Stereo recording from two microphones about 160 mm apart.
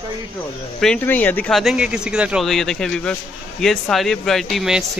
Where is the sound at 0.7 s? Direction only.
5° left (ahead or behind).